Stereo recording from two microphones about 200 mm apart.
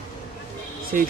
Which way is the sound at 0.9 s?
45° right (ahead or behind).